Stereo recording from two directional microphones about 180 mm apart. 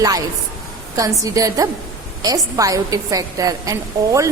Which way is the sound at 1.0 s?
20° right (ahead or behind).